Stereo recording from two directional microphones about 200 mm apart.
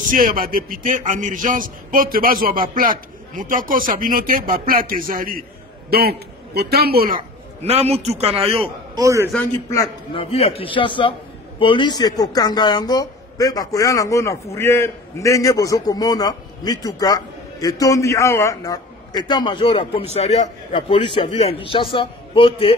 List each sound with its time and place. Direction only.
0.0 s a man's voice: 45° right (ahead or behind)
7.6 s a man's voice: 30° right (ahead or behind)
9.0 s a man's voice: 15° right (ahead or behind)
9.3 s a man's voice: 10° left (ahead or behind)
10.1 s a man's voice: 30° left (ahead or behind)